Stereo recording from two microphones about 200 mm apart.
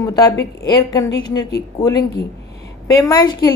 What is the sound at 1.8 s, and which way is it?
A woman's voice, 15° left (ahead or behind).